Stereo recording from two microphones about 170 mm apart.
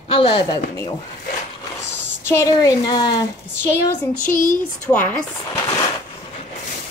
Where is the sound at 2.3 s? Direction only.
20° left (ahead or behind).